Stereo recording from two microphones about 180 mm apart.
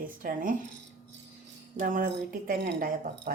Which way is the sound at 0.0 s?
50° right (ahead or behind).